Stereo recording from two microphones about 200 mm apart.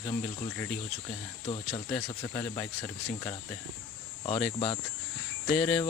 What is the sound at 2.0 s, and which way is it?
Speech, 15° left (ahead or behind).